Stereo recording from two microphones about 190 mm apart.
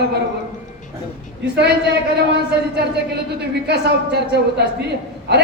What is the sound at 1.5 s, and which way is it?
Speech, 60° right (ahead or behind).